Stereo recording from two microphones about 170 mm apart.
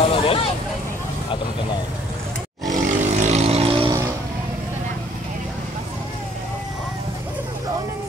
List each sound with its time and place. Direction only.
0.0 s vehicle: 35° left (ahead or behind)
2.7 s vehicle: 45° right (ahead or behind)